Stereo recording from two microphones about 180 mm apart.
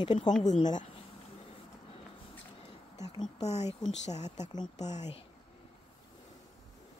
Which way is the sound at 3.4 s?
40° left (ahead or behind).